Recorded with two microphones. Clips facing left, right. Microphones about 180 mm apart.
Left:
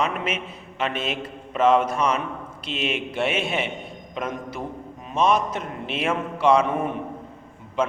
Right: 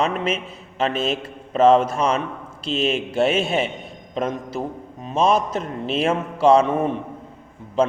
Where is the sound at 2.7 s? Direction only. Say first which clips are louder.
Right 6 dB; 40° right (ahead or behind).